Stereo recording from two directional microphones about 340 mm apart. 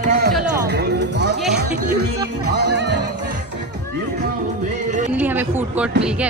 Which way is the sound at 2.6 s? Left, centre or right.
Right.